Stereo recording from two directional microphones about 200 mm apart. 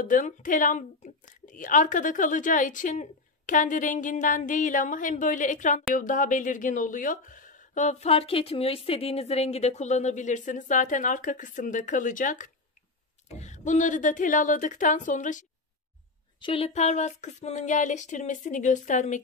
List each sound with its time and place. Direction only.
0.0 s a woman's voice: 40° left (ahead or behind)
16.3 s a woman's voice: 25° left (ahead or behind)